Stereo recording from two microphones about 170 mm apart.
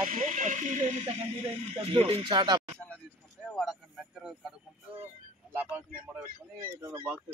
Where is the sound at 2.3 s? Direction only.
25° right (ahead or behind).